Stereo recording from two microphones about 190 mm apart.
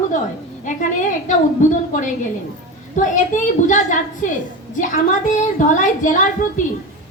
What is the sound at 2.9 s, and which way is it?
A woman's voice, 40° left (ahead or behind).